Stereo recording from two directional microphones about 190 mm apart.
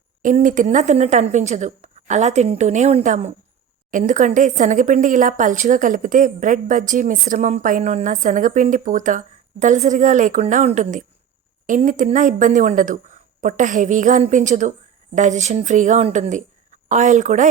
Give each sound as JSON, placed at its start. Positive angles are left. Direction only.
{"t": 0.2, "sound": "speech", "side_deg": -45}